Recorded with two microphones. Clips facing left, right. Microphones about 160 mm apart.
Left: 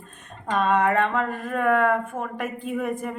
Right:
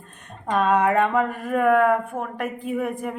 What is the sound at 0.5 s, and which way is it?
A woman's voice, 5° right (ahead or behind).